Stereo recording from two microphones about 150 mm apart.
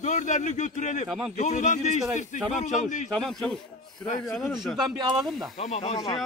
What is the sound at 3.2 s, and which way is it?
Speech, 5° left (ahead or behind).